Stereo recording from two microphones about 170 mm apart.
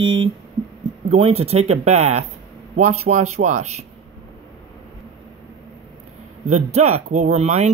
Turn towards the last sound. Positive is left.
turn(degrees=-40)  # may be behind; listen again after turning